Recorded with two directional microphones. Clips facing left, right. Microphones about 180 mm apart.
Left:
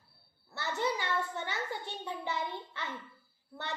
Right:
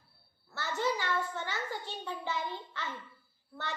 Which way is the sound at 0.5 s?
20° left (ahead or behind).